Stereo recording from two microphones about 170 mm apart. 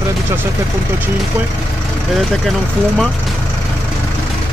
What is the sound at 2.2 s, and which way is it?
Speech, centre (ahead or behind).